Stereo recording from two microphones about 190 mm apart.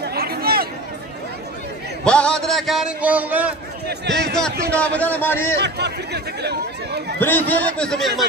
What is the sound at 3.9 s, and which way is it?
Speech, 60° right (ahead or behind).